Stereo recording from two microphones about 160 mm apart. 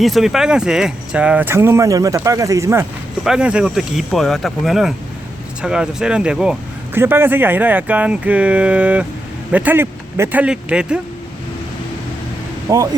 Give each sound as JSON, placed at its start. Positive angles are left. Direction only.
{"t": 0.0, "sound": "speech", "side_deg": 0}
{"t": 3.2, "sound": "speech", "side_deg": -5}
{"t": 12.6, "sound": "speech", "side_deg": -20}